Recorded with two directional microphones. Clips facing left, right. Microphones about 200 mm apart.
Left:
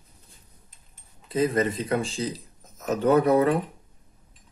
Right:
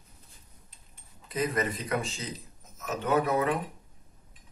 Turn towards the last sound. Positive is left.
turn(degrees=35)  # may be behind; listen again after turning